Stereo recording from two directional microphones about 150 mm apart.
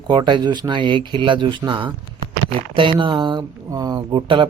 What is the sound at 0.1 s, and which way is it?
Speech, 30° right (ahead or behind).